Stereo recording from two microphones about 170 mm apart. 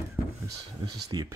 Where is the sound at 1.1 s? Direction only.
25° right (ahead or behind).